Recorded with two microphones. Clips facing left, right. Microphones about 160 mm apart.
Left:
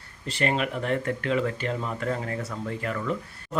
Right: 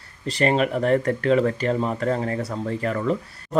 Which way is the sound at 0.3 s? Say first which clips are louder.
Right 6 dB; 40° right (ahead or behind).